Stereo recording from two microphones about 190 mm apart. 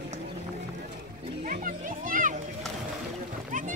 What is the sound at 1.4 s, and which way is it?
Children playing, 45° right (ahead or behind).